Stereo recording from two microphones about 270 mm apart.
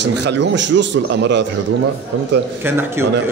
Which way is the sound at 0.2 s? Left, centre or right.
Right.